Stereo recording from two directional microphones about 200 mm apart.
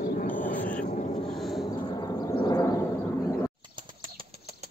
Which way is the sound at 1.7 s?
20° left (ahead or behind).